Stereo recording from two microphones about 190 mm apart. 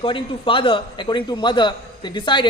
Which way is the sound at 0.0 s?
25° left (ahead or behind).